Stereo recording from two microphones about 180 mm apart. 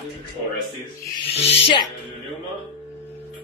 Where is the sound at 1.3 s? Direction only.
35° left (ahead or behind).